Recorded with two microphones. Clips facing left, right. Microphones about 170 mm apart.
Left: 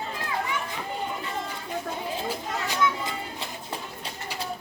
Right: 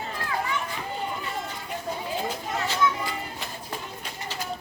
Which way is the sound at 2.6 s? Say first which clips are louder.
Right 1 dB; 20° left (ahead or behind).